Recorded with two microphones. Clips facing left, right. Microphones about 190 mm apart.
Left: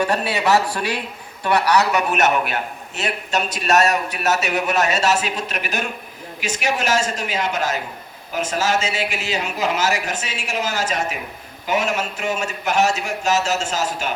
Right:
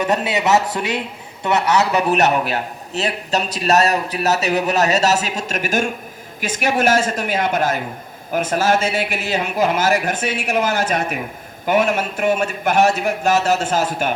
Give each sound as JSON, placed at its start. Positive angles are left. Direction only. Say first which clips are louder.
{"t": 0.0, "sound": "a man's voice", "louder": "right 1 dB", "side_deg": -20}